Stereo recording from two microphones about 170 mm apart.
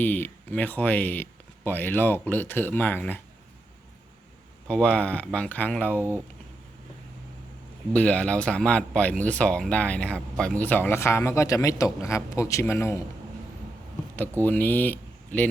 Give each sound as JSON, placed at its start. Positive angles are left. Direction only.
{"t": 0.0, "sound": "speech", "side_deg": 10}
{"t": 4.7, "sound": "speech", "side_deg": 5}
{"t": 7.9, "sound": "speech", "side_deg": 5}
{"t": 14.2, "sound": "speech", "side_deg": 10}